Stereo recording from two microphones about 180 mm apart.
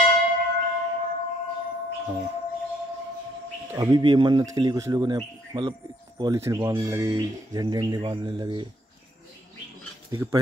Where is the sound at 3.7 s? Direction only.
20° right (ahead or behind).